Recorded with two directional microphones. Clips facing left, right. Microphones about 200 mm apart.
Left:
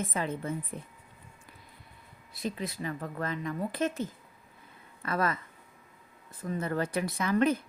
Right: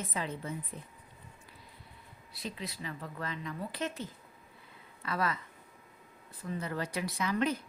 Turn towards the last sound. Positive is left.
turn(degrees=50)  # may be behind; listen again after turning